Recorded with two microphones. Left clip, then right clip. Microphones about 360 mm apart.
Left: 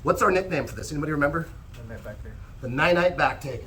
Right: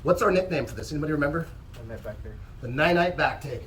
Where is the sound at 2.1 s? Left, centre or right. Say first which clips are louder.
Right 2 dB; right.